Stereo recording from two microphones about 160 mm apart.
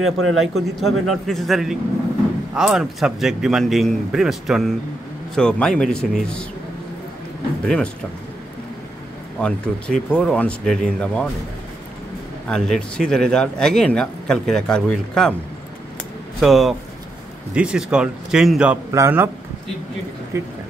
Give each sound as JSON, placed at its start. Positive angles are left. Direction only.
{"t": 0.0, "sound": "speech", "side_deg": 0}
{"t": 7.6, "sound": "speech", "side_deg": 5}
{"t": 9.4, "sound": "speech", "side_deg": 5}
{"t": 12.4, "sound": "speech", "side_deg": 5}
{"t": 16.3, "sound": "speech", "side_deg": 0}
{"t": 18.9, "sound": "a man's voice", "side_deg": -15}
{"t": 20.3, "sound": "a man's voice", "side_deg": -15}